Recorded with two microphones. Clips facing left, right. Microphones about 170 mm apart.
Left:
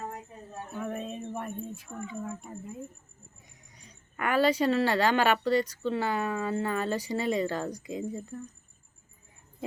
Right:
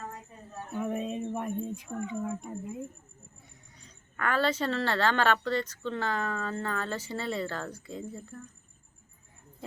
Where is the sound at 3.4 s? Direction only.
15° left (ahead or behind).